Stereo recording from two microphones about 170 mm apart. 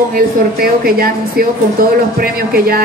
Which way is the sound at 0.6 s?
60° right (ahead or behind).